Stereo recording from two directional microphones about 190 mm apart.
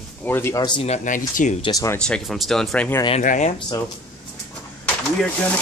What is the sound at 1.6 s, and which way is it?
Speech, 20° left (ahead or behind).